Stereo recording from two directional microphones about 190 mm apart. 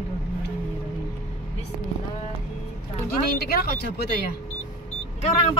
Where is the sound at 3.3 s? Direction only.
55° left (ahead or behind).